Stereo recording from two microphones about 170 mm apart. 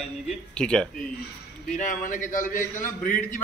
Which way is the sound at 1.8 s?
50° left (ahead or behind).